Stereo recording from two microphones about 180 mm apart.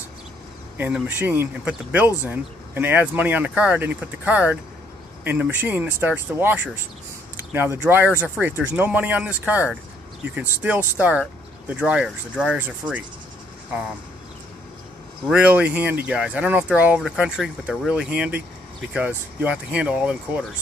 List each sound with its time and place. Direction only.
0.7 s speech: 10° right (ahead or behind)
15.2 s speech: 5° right (ahead or behind)